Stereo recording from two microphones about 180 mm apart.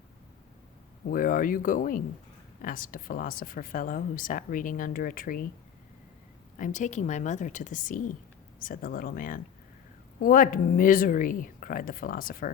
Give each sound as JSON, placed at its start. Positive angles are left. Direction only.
{"t": 1.0, "sound": "speech", "side_deg": 50}
{"t": 6.6, "sound": "speech", "side_deg": 45}